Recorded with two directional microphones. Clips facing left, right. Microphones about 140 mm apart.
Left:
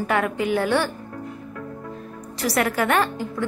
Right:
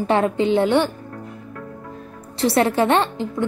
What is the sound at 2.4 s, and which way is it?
A woman's voice, 25° right (ahead or behind).